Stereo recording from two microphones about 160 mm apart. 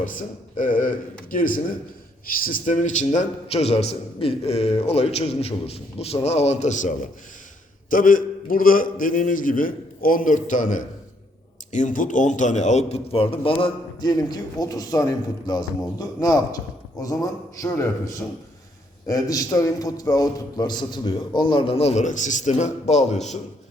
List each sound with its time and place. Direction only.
0.0 s a man's voice: 55° left (ahead or behind)